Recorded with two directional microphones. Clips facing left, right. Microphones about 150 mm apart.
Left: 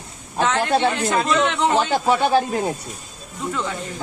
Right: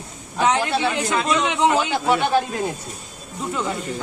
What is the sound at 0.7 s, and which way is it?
Speech, 40° left (ahead or behind).